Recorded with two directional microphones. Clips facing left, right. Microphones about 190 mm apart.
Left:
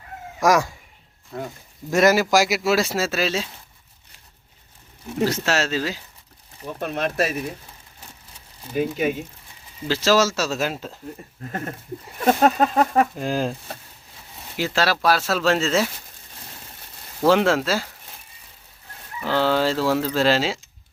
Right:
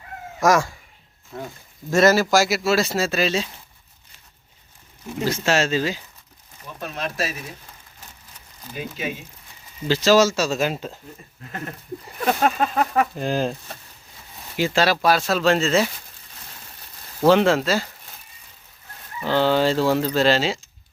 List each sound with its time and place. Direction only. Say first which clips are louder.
0.4 s speech: even; 15° left (ahead or behind)
1.3 s speech: left 2 dB; centre (ahead or behind)
1.9 s speech: right 1 dB; 15° left (ahead or behind)
5.3 s speech: right 2 dB; centre (ahead or behind)
6.7 s speech: left 5 dB; 55° left (ahead or behind)
8.7 s speech: left 8 dB; 50° left (ahead or behind)
9.8 s speech: right 3 dB; 5° left (ahead or behind)
11.4 s speech: left 2 dB; 40° left (ahead or behind)
13.1 s speech: right 1 dB; 5° left (ahead or behind)
17.2 s speech: right 2 dB; 5° left (ahead or behind)
19.2 s speech: right 2 dB; 5° left (ahead or behind)